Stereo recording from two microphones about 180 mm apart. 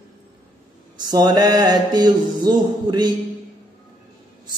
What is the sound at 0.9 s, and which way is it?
Mantra, 20° right (ahead or behind).